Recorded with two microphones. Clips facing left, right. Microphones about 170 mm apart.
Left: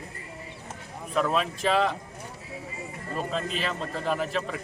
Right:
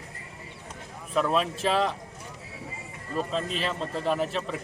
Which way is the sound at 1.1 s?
Centre (ahead or behind).